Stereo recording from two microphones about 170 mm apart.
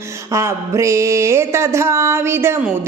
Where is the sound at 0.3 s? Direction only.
15° right (ahead or behind).